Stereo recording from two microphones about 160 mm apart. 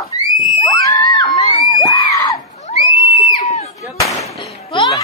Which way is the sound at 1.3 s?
50° left (ahead or behind).